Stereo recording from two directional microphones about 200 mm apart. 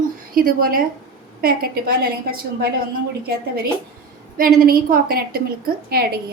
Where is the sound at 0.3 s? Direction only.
45° right (ahead or behind).